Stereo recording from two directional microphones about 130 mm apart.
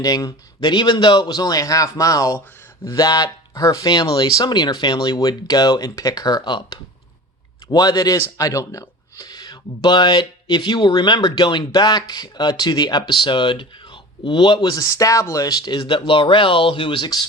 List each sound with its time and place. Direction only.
0.0 s a man's voice: 30° left (ahead or behind)